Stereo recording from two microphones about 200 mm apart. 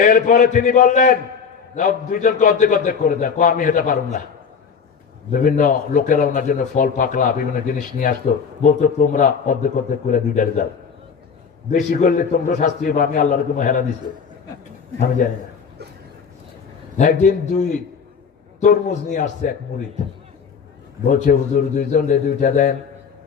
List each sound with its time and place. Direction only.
0.0 s a man's voice: 40° left (ahead or behind)
5.3 s a man's voice: 45° left (ahead or behind)
11.7 s a man's voice: 40° left (ahead or behind)
17.0 s a man's voice: 40° left (ahead or behind)
21.1 s a man's voice: 40° left (ahead or behind)